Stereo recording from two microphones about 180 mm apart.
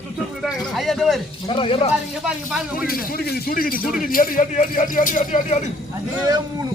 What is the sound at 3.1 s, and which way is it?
Speech, 60° left (ahead or behind).